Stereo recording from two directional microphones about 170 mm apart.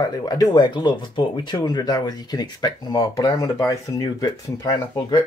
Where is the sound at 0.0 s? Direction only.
25° left (ahead or behind).